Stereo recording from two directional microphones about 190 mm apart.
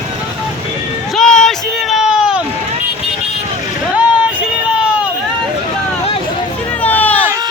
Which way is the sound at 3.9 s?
5° right (ahead or behind).